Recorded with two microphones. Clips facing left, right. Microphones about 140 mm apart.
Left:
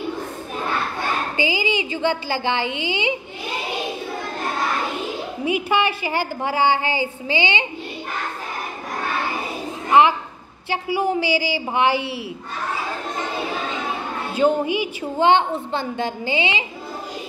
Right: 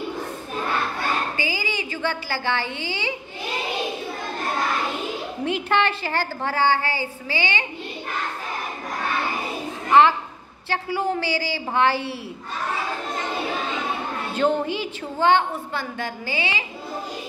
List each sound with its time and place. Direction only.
1.3 s a woman's voice: 20° left (ahead or behind)
5.4 s a woman's voice: 10° left (ahead or behind)
9.8 s a child's voice: 15° left (ahead or behind)
14.3 s a woman's voice: 10° left (ahead or behind)